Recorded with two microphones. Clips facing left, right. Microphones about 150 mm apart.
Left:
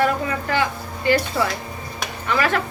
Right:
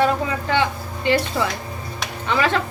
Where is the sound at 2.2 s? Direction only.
20° right (ahead or behind).